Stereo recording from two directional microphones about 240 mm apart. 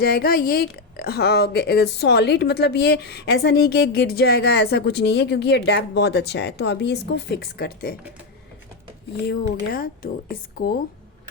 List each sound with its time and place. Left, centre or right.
0.0 s a woman's voice: left
9.2 s speech: left